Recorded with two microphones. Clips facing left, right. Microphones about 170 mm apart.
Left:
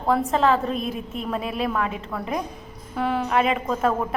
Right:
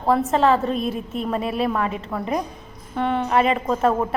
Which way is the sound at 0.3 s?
Centre (ahead or behind).